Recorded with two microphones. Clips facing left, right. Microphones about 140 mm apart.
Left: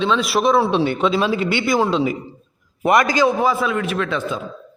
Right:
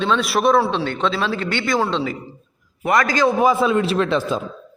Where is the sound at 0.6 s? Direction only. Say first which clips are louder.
Left 2 dB; 15° left (ahead or behind).